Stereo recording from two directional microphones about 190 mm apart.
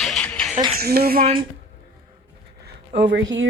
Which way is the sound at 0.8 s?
55° right (ahead or behind).